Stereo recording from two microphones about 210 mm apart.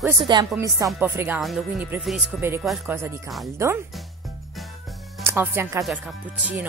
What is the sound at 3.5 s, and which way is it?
Speech, 15° right (ahead or behind).